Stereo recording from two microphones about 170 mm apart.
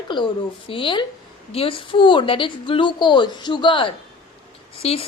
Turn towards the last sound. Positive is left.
turn(degrees=35)  # may be behind; listen again after turning